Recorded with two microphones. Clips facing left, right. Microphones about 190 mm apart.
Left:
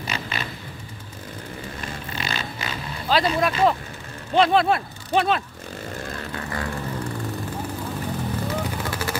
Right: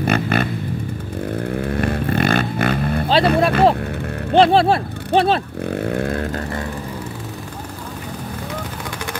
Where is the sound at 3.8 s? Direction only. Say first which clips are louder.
Right 13 dB; 60° right (ahead or behind).